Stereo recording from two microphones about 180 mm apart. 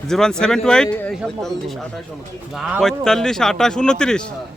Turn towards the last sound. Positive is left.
turn(degrees=5)  # may be behind; listen again after turning